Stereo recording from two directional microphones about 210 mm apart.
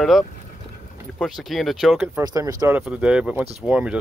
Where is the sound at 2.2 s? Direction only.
15° right (ahead or behind).